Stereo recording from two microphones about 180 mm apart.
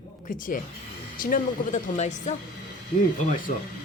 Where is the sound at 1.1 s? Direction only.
50° left (ahead or behind).